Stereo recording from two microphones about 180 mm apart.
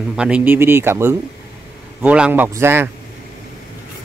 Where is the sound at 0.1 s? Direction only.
5° right (ahead or behind).